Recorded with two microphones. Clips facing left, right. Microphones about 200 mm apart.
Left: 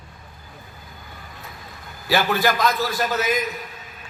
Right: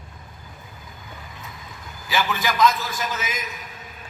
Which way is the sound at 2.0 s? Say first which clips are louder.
Left 5 dB; 60° left (ahead or behind).